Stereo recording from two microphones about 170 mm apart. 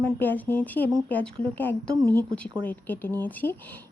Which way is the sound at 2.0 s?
20° right (ahead or behind).